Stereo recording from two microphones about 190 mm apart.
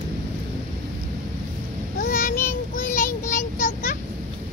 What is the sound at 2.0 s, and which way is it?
Child singing, 50° left (ahead or behind).